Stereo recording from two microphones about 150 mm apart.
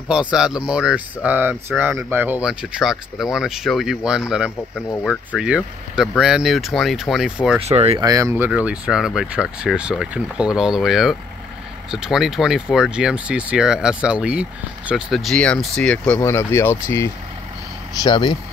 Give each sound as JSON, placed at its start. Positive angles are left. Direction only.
{"t": 0.1, "sound": "speech", "side_deg": -5}
{"t": 5.0, "sound": "speech", "side_deg": 10}
{"t": 5.9, "sound": "speech", "side_deg": -5}
{"t": 7.6, "sound": "speech", "side_deg": -45}
{"t": 8.0, "sound": "speech", "side_deg": -25}
{"t": 8.5, "sound": "speech", "side_deg": -5}
{"t": 16.2, "sound": "speech", "side_deg": 20}
{"t": 18.0, "sound": "speech", "side_deg": 30}